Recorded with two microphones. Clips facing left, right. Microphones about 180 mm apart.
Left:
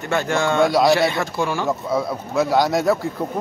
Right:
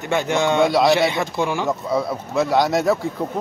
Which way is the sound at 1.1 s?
20° right (ahead or behind).